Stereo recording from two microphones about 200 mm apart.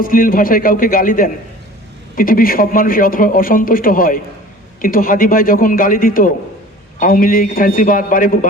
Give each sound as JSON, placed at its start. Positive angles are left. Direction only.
{"t": 0.0, "sound": "a man's voice", "side_deg": 45}